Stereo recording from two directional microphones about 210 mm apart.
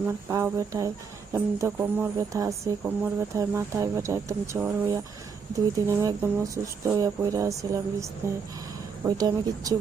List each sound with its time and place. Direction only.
0.3 s speech: 15° right (ahead or behind)
9.0 s a woman's voice: 20° right (ahead or behind)